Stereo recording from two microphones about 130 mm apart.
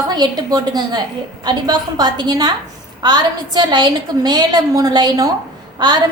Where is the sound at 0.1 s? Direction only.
30° right (ahead or behind).